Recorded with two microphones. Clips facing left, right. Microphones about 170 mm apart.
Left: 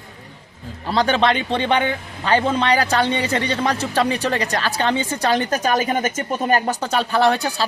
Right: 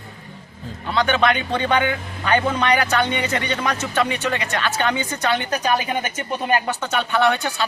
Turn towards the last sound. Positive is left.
turn(degrees=35)  # may be behind; listen again after turning